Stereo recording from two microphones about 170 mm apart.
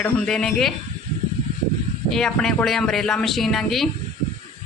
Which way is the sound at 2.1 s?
5° left (ahead or behind).